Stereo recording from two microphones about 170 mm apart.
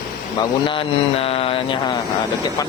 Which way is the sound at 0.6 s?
30° left (ahead or behind).